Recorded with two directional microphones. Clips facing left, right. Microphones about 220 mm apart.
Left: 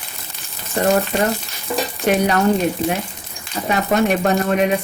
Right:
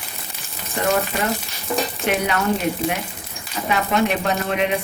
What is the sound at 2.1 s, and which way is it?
Speech, 40° left (ahead or behind).